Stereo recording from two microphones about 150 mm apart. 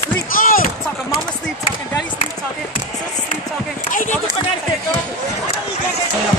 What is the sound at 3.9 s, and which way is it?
Speech, 60° left (ahead or behind).